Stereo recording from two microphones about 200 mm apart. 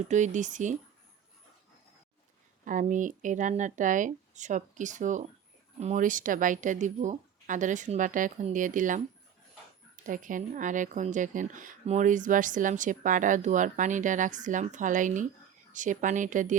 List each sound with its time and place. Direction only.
0.1 s speech: 35° right (ahead or behind)
2.6 s speech: 40° right (ahead or behind)
10.1 s speech: 40° right (ahead or behind)